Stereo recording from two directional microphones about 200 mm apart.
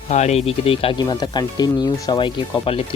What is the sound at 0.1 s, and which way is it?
Speech, 35° left (ahead or behind).